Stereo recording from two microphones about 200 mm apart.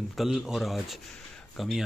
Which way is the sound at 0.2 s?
Centre (ahead or behind).